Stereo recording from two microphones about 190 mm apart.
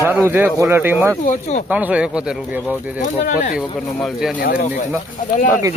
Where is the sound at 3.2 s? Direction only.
40° left (ahead or behind).